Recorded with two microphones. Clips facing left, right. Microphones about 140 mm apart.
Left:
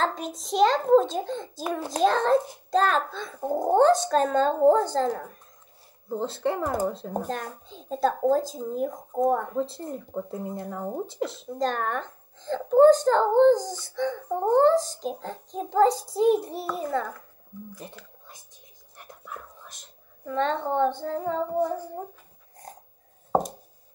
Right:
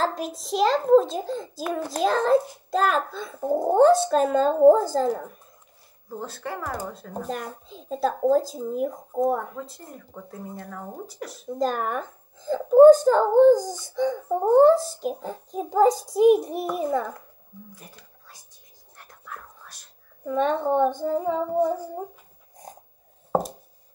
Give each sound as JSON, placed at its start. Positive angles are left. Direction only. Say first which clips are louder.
{"t": 0.0, "sound": "speech", "louder": "right 1 dB", "side_deg": 0}
{"t": 6.0, "sound": "speech", "louder": "left 6 dB", "side_deg": 25}
{"t": 7.2, "sound": "speech", "louder": "right 1 dB", "side_deg": -5}
{"t": 9.6, "sound": "speech", "louder": "left 8 dB", "side_deg": 30}
{"t": 11.4, "sound": "a child's voice", "louder": "right 4 dB", "side_deg": -5}
{"t": 18.9, "sound": "whispering", "louder": "left 1 dB", "side_deg": 20}
{"t": 20.2, "sound": "a child's voice", "louder": "right 3 dB", "side_deg": -15}
{"t": 22.6, "sound": "dog", "louder": "right 1 dB", "side_deg": -15}